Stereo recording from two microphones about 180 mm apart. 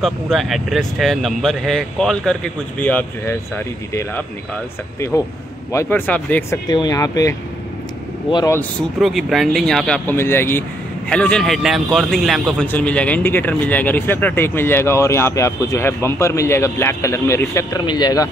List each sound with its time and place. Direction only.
0.0 s speech: centre (ahead or behind)
5.7 s a man's voice: 15° left (ahead or behind)
6.7 s speech: 20° left (ahead or behind)
9.0 s a man's voice: centre (ahead or behind); by 18.3 s 20° left (ahead or behind)